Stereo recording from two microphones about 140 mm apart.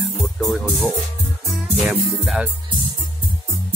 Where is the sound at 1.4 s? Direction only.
Centre (ahead or behind).